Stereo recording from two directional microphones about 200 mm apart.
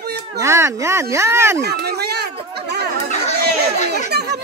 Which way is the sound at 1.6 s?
55° right (ahead or behind).